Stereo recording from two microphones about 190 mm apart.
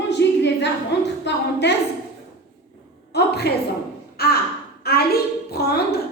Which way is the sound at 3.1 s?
60° left (ahead or behind).